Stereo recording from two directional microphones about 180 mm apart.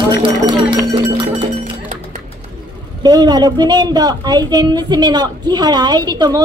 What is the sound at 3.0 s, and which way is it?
A woman's voice, 20° right (ahead or behind).